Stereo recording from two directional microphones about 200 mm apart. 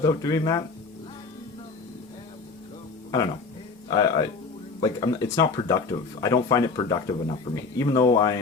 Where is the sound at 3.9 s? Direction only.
20° left (ahead or behind).